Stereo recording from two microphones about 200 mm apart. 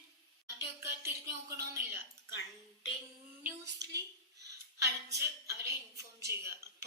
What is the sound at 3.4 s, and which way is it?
Child singing, 55° right (ahead or behind).